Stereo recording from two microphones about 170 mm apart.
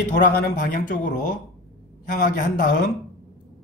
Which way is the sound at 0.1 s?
60° left (ahead or behind).